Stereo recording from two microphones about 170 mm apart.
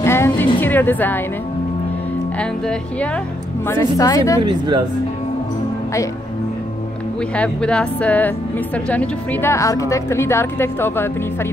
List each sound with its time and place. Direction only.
0.0 s music: 15° left (ahead or behind)
0.6 s speech: 10° left (ahead or behind)
3.6 s a woman's voice: 15° left (ahead or behind)
4.4 s speech: 25° right (ahead or behind)
7.3 s a woman's voice: 5° left (ahead or behind)